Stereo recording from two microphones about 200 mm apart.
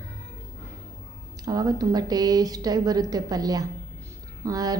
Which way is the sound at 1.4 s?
20° right (ahead or behind).